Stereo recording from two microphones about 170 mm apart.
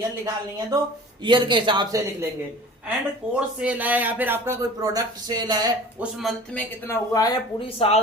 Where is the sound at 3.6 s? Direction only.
10° right (ahead or behind); by 5.7 s 25° right (ahead or behind).